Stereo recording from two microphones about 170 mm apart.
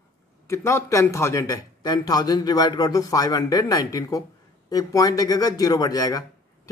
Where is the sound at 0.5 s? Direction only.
15° left (ahead or behind).